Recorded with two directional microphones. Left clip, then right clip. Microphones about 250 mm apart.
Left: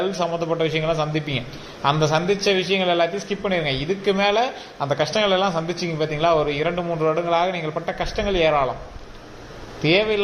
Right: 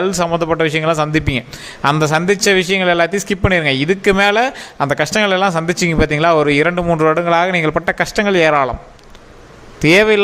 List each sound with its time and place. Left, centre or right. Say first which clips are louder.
0.0 s a man's voice: right 7 dB; right
9.8 s a man's voice: right 8 dB; right